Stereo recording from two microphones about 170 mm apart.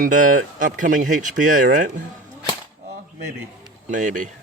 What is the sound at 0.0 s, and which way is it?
Speech, 50° right (ahead or behind).